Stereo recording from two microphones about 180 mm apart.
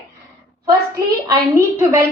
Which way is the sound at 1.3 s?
15° right (ahead or behind).